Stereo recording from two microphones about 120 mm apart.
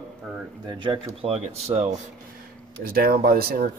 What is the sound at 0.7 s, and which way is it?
Speech, 40° right (ahead or behind).